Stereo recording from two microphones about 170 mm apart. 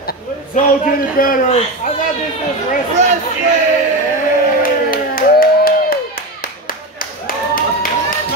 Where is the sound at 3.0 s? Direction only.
45° right (ahead or behind).